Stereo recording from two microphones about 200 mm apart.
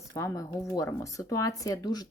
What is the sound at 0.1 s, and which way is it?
Speech, 15° left (ahead or behind).